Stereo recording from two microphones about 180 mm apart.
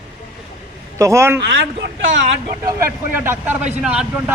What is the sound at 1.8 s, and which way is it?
Speech, 85° right.